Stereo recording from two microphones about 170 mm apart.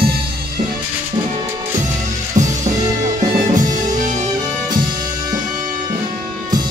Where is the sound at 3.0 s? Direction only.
50° right (ahead or behind).